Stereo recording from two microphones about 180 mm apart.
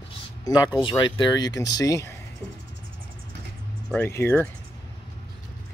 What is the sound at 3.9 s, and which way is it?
Speech, 10° left (ahead or behind).